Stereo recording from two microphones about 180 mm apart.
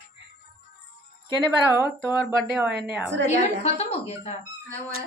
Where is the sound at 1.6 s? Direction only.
10° right (ahead or behind).